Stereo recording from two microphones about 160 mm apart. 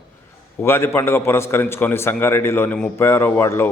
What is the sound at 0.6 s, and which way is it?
A man's voice, 15° left (ahead or behind).